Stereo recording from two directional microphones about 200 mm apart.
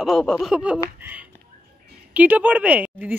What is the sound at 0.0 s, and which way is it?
Speech, centre (ahead or behind).